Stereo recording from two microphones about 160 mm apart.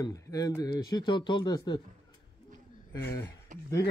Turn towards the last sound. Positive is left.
turn(degrees=-55)  # may be behind; listen again after turning